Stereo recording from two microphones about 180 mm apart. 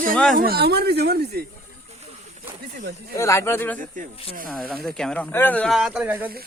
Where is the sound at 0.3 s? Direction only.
55° right (ahead or behind).